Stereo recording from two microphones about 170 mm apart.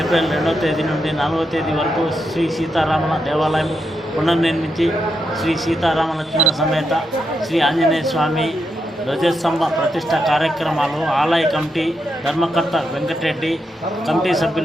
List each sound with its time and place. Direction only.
0.0 s a man's voice: centre (ahead or behind)